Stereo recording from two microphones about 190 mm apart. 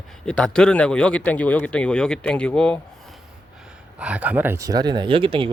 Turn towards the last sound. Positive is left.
turn(degrees=-25)  # may be behind; listen again after turning